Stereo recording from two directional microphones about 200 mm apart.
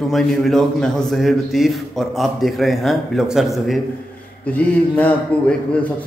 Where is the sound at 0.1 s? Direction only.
Centre (ahead or behind).